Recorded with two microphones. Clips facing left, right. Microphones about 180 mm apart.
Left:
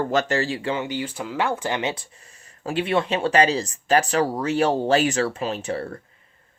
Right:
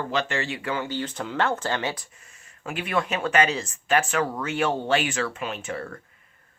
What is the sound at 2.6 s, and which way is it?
Speech, 30° left (ahead or behind).